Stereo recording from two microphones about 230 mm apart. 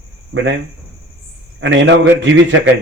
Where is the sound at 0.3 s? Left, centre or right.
Right.